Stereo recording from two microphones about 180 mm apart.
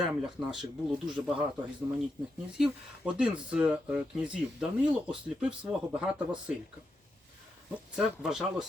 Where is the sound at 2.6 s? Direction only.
5° right (ahead or behind).